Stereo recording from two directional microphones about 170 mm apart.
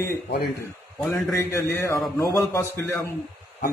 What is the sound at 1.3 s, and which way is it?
A man's voice, 15° left (ahead or behind).